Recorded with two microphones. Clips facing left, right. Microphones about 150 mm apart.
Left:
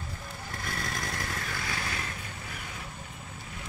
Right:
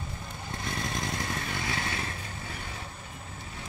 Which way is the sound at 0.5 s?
25° right (ahead or behind).